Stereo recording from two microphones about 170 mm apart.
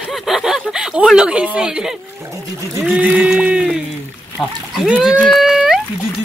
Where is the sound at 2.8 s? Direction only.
5° right (ahead or behind).